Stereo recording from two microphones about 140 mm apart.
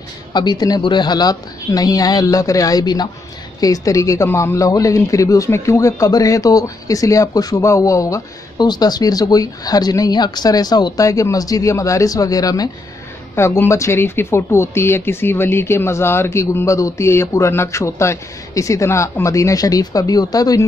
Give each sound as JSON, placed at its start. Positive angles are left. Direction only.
{"t": 0.3, "sound": "speech", "side_deg": 30}